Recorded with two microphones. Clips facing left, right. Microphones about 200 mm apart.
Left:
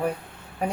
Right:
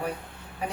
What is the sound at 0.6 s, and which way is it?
Speech, 45° left (ahead or behind).